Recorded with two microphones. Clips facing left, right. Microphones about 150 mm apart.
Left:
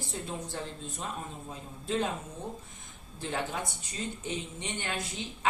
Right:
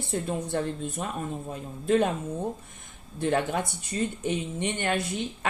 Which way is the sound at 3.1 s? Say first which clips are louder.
Right 8 dB; 60° right (ahead or behind).